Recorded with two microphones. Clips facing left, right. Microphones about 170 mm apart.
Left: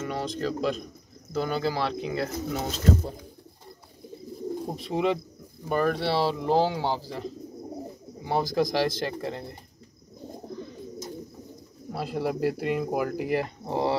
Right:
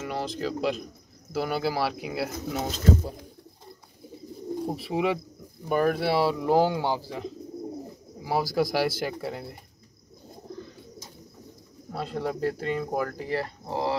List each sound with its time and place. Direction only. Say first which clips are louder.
0.0 s speech: left 1 dB; centre (ahead or behind)
4.6 s speech: even; 5° right (ahead or behind)
7.1 s speech: even; centre (ahead or behind)
11.9 s speech: left 2 dB; 5° left (ahead or behind); by 13.9 s 20° left (ahead or behind)